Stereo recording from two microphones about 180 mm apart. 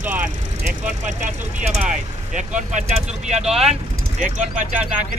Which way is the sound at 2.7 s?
40° right (ahead or behind).